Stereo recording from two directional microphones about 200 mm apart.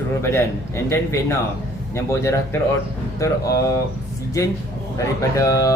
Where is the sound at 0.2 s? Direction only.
15° left (ahead or behind).